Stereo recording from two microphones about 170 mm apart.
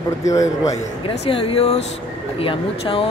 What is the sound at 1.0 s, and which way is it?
Speech, 30° left (ahead or behind).